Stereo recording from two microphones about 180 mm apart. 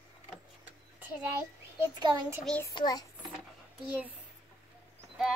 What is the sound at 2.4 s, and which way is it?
Speech, 5° left (ahead or behind).